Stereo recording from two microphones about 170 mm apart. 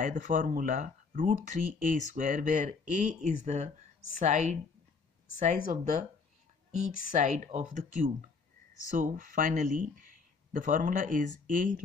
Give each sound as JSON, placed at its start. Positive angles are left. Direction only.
{"t": 0.0, "sound": "speech", "side_deg": -50}
{"t": 5.7, "sound": "speech", "side_deg": -45}
{"t": 7.1, "sound": "speech", "side_deg": -45}